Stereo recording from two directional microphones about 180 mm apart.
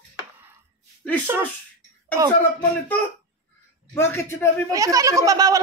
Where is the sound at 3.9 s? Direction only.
15° left (ahead or behind).